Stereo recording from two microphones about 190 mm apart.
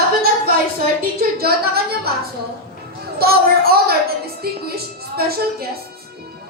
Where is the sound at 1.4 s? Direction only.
55° right (ahead or behind).